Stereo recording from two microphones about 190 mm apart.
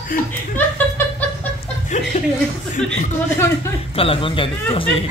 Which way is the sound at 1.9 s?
40° left (ahead or behind).